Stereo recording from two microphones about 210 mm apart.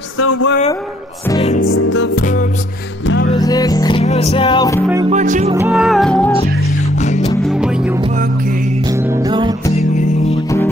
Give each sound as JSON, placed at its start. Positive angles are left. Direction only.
{"t": 0.2, "sound": "music", "side_deg": 80}
{"t": 1.6, "sound": "music", "side_deg": 80}
{"t": 2.1, "sound": "music", "side_deg": 40}
{"t": 3.3, "sound": "speech", "side_deg": 15}
{"t": 4.0, "sound": "music", "side_deg": 30}
{"t": 5.1, "sound": "music", "side_deg": -35}
{"t": 5.7, "sound": "music", "side_deg": 0}
{"t": 7.0, "sound": "music", "side_deg": 35}
{"t": 7.4, "sound": "music", "side_deg": -5}
{"t": 9.1, "sound": "music", "side_deg": -20}
{"t": 9.8, "sound": "music", "side_deg": 35}